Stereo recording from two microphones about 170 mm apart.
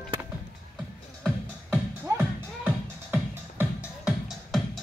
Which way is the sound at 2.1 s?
20° right (ahead or behind).